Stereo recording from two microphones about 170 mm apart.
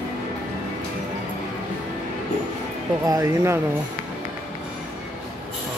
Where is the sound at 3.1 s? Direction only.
20° right (ahead or behind).